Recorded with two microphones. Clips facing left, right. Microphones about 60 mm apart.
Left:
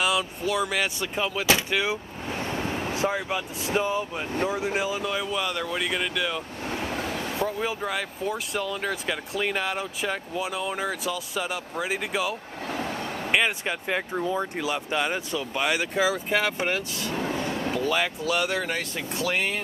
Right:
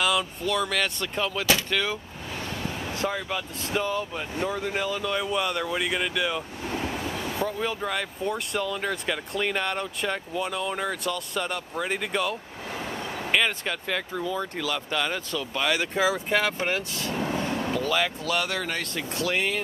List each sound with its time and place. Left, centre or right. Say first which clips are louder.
0.0 s speech: even; centre
2.4 s vehicle: left 4 dB; left
2.9 s speech: left 1 dB; centre
13.3 s speech: left 1 dB; centre
15.9 s speech: even; centre
17.0 s vehicle: even; centre
17.8 s speech: left 1 dB; centre